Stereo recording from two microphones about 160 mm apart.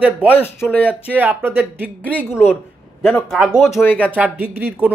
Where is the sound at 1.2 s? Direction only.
10° right (ahead or behind).